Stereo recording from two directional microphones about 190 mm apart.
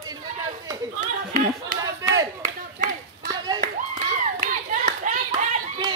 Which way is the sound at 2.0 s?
15° right (ahead or behind).